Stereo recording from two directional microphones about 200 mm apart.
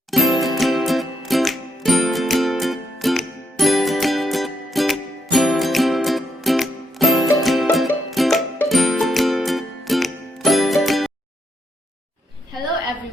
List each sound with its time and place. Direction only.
0.1 s music: centre (ahead or behind)